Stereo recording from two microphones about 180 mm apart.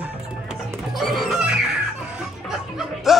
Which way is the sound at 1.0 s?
Centre (ahead or behind).